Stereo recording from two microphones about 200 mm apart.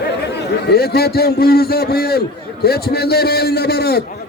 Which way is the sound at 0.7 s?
50° left (ahead or behind).